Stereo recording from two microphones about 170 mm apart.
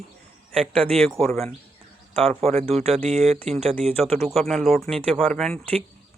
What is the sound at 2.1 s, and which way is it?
Speech, 35° right (ahead or behind).